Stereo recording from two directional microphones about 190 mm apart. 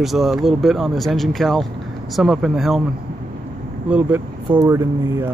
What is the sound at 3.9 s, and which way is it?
Speech, 5° right (ahead or behind).